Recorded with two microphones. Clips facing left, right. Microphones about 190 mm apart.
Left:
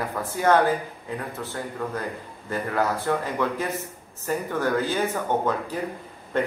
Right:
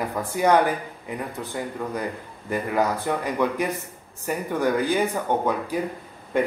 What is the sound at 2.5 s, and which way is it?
Speech, 15° right (ahead or behind).